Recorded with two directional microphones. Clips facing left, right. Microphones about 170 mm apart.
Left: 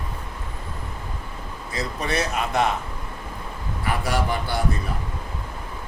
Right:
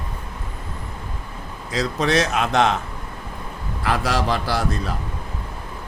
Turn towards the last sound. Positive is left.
turn(degrees=-90)